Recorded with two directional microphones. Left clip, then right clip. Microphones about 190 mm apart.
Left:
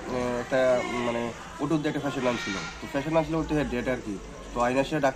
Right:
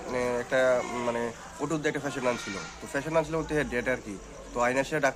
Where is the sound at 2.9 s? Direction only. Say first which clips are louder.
Left 1 dB; 20° right (ahead or behind).